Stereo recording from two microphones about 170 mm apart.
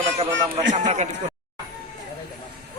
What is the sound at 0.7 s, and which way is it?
Speech, 45° right (ahead or behind).